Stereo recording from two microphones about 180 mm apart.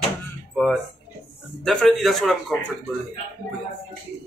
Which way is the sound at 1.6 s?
5° left (ahead or behind).